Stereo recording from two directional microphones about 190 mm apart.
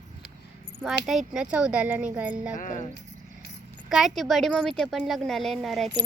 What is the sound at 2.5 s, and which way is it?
Speech, 45° left (ahead or behind).